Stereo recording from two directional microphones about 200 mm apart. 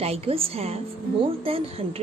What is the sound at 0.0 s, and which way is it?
A woman's voice, 30° right (ahead or behind).